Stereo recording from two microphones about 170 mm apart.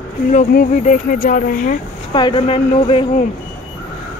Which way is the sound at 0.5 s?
55° left (ahead or behind).